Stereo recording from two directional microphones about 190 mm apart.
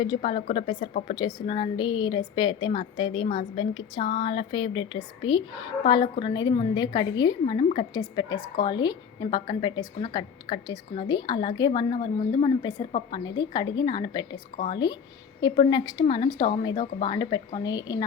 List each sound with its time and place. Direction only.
0.0 s speech: 25° left (ahead or behind)